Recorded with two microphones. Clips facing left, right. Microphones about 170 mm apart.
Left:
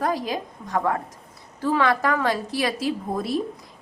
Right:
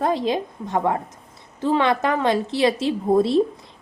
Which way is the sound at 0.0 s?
25° right (ahead or behind).